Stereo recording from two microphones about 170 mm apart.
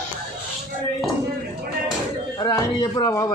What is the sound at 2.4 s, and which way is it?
Speech, 20° left (ahead or behind).